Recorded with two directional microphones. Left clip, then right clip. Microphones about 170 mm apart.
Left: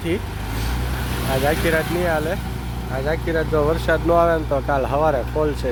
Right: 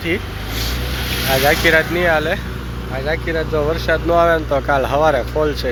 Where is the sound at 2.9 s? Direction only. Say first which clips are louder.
Right 2 dB; 20° left (ahead or behind).